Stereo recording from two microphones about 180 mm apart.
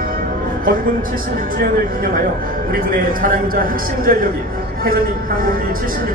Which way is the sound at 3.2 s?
50° right (ahead or behind).